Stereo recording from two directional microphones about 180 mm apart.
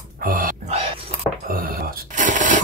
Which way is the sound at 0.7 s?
30° right (ahead or behind).